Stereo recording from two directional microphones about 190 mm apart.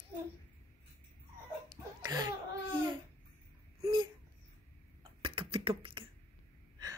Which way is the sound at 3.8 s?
25° right (ahead or behind).